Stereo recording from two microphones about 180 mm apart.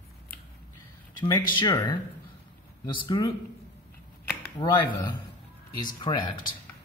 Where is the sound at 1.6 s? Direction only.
25° left (ahead or behind).